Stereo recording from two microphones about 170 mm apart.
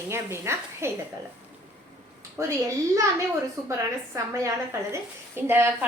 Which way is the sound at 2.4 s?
20° right (ahead or behind).